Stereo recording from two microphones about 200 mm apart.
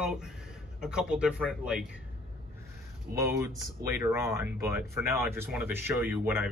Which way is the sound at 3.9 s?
15° right (ahead or behind).